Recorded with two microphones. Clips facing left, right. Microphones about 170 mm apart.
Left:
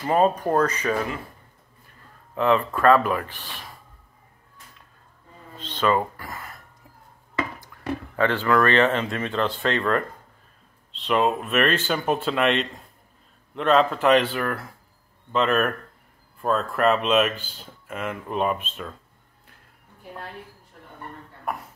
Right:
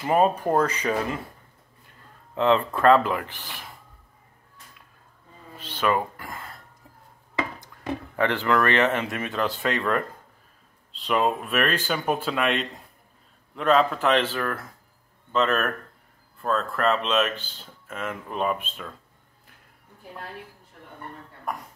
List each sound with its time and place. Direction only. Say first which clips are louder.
0.0 s speech: left 1 dB; 10° right (ahead or behind)
2.3 s speech: even; 25° right (ahead or behind)
5.8 s speech: left 2 dB; 10° right (ahead or behind)
6.3 s a sound: left 1 dB; 25° right (ahead or behind)
7.3 s speech: left 1 dB; 20° right (ahead or behind)
11.1 s speech: left 2 dB; centre (ahead or behind)